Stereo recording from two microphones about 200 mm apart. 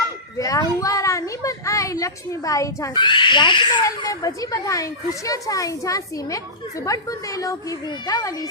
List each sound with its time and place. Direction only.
0.3 s a child's voice: 15° left (ahead or behind)